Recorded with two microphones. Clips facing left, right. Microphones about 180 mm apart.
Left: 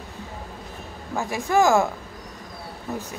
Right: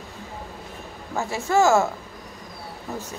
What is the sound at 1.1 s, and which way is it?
Speech, 15° left (ahead or behind).